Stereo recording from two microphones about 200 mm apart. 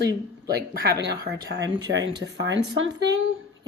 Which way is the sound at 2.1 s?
60° right (ahead or behind).